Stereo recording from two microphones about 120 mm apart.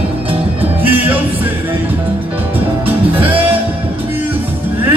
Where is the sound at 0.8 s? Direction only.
15° right (ahead or behind).